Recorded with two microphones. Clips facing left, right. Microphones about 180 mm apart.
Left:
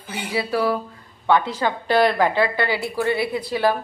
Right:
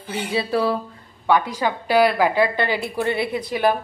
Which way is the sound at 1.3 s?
15° right (ahead or behind).